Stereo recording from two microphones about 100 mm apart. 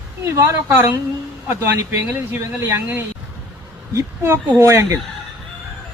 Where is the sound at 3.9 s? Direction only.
30° right (ahead or behind).